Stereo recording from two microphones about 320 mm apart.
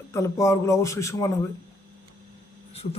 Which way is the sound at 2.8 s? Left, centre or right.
Left.